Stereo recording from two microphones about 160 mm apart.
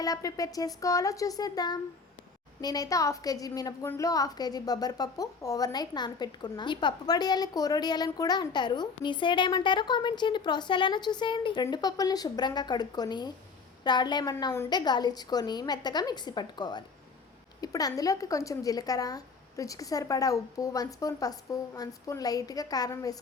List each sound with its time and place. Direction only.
0.0 s a woman's voice: 20° left (ahead or behind)